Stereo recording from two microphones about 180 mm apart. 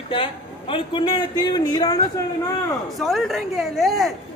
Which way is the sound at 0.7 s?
25° left (ahead or behind).